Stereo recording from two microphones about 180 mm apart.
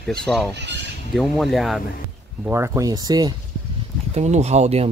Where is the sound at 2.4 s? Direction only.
15° right (ahead or behind).